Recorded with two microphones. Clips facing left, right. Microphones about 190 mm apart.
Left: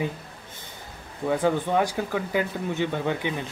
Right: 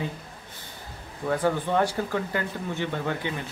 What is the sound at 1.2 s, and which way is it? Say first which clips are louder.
Speech: left 2 dB; 10° left (ahead or behind).